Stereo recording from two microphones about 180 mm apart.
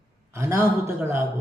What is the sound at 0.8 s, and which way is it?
Speech, 15° right (ahead or behind).